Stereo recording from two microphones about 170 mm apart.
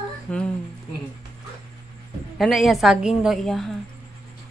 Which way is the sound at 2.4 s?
Centre (ahead or behind).